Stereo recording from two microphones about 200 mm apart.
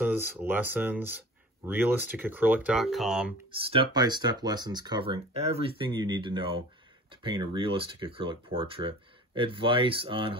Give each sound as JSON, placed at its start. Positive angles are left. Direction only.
{"t": 0.0, "sound": "speech", "side_deg": -10}
{"t": 3.5, "sound": "speech", "side_deg": -25}